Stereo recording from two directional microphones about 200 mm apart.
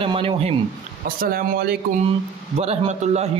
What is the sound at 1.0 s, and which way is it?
Speech, 45° right (ahead or behind).